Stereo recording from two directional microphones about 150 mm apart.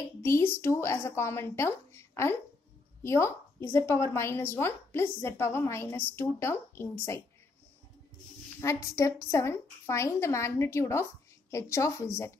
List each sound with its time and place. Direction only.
0.2 s a woman's voice: 15° left (ahead or behind)
8.5 s a woman's voice: 20° left (ahead or behind)